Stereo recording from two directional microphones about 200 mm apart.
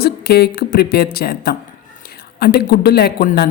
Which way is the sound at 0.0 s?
55° left (ahead or behind).